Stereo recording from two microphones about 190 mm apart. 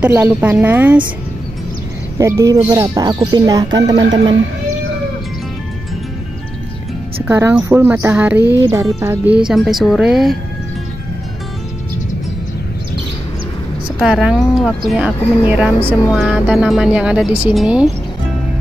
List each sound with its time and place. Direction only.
0.0 s a woman's voice: 10° right (ahead or behind)
2.1 s speech: 15° right (ahead or behind)
7.2 s a woman's voice: 10° right (ahead or behind)
14.0 s a woman's voice: 5° right (ahead or behind)